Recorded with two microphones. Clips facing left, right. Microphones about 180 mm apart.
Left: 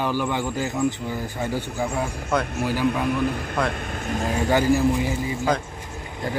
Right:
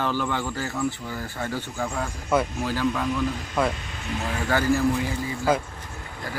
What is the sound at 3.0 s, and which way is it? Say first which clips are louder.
Speech: left 3 dB; 60° left (ahead or behind).